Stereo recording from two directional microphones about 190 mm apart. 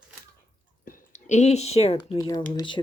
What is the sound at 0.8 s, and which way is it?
Speech, 45° left (ahead or behind).